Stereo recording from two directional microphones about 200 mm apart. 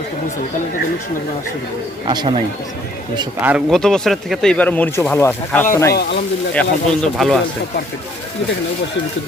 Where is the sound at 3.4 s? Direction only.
5° right (ahead or behind).